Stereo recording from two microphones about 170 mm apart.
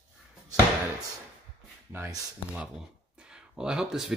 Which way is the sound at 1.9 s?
15° right (ahead or behind).